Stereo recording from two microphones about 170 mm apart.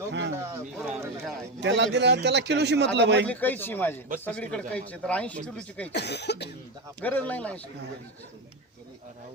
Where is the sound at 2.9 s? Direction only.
90° right.